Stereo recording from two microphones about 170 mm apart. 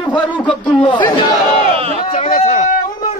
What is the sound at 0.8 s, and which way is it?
Chatter, 25° left (ahead or behind).